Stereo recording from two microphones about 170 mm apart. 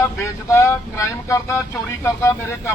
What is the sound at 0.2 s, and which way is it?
Speech, 15° left (ahead or behind).